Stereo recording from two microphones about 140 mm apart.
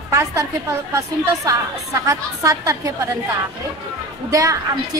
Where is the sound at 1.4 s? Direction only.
25° right (ahead or behind).